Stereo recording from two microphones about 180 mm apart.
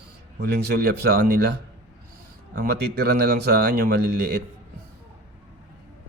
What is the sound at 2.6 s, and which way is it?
Speech, 65° right (ahead or behind).